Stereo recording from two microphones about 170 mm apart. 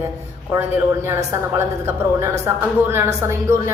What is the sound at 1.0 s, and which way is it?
A woman's voice, 15° right (ahead or behind).